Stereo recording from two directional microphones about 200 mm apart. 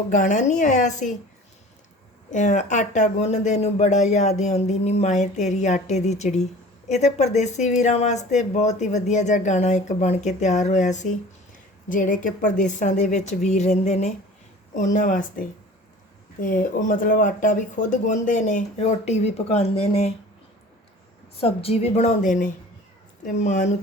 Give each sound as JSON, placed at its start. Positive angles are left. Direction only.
{"t": 0.1, "sound": "speech", "side_deg": 40}
{"t": 2.3, "sound": "speech", "side_deg": 35}
{"t": 21.4, "sound": "speech", "side_deg": 30}